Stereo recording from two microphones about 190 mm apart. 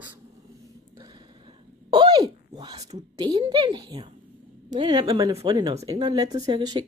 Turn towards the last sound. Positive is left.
turn(degrees=-25)  # may be behind; listen again after turning